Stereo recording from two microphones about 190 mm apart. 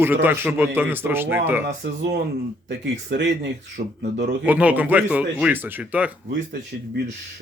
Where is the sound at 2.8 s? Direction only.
65° right (ahead or behind).